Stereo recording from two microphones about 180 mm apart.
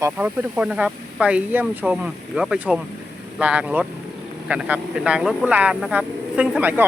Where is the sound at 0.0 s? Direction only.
10° right (ahead or behind).